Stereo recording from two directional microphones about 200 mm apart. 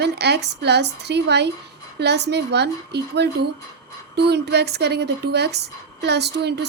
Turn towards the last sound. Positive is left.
turn(degrees=-55)  # may be behind; listen again after turning